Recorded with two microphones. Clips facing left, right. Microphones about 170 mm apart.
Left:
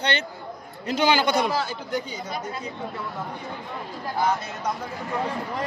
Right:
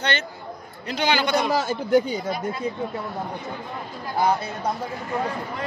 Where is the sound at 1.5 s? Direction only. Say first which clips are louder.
Right 7 dB; 45° right (ahead or behind).